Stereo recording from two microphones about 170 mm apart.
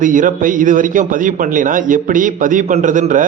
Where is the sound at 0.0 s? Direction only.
50° right (ahead or behind).